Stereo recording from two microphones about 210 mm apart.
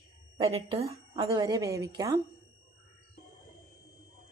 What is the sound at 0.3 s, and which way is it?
A woman's voice, 25° right (ahead or behind).